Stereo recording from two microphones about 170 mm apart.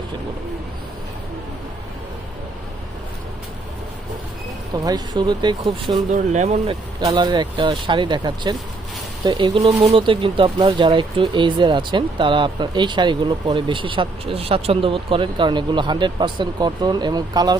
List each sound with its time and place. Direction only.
4.8 s speech: 25° right (ahead or behind)
6.1 s speech: 40° right (ahead or behind)
7.1 s speech: 25° right (ahead or behind)